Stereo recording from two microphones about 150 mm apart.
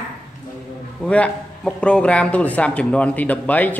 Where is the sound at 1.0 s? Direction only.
5° left (ahead or behind).